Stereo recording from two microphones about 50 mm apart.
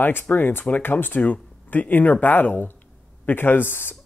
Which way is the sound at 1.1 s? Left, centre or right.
Left.